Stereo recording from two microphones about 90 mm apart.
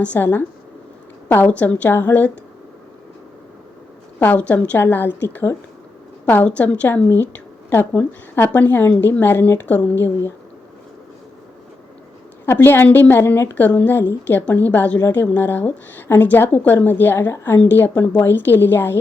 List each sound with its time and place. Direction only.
0.0 s a woman's voice: 20° left (ahead or behind)
4.2 s a woman's voice: 20° left (ahead or behind)
12.5 s a woman's voice: 25° left (ahead or behind)